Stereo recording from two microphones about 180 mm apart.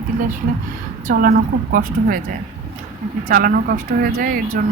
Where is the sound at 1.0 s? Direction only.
55° right (ahead or behind).